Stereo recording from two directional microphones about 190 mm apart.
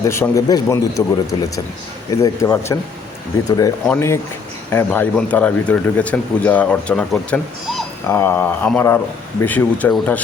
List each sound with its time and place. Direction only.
0.0 s speech: 15° left (ahead or behind)
3.8 s speech: 10° left (ahead or behind)